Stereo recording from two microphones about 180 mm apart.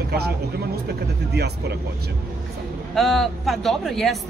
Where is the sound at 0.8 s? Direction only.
65° right (ahead or behind).